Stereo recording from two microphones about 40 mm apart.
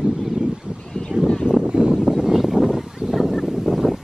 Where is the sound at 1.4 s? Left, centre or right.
Right.